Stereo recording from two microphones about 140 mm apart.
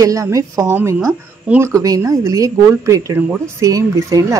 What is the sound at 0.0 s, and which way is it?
Speech, 25° right (ahead or behind).